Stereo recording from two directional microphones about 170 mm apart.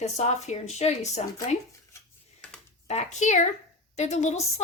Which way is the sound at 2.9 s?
40° left (ahead or behind).